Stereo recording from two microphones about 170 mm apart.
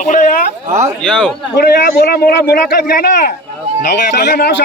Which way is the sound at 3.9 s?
85° left.